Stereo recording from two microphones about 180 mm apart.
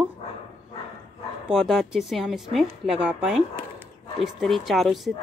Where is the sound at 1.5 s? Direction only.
Centre (ahead or behind).